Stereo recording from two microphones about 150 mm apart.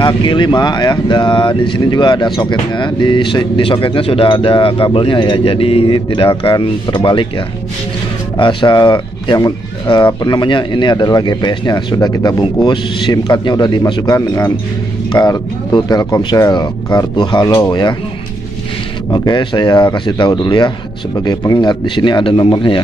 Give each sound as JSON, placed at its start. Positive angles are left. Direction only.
{"t": 0.0, "sound": "speech", "side_deg": 30}
{"t": 8.4, "sound": "speech", "side_deg": 35}
{"t": 19.0, "sound": "speech", "side_deg": 25}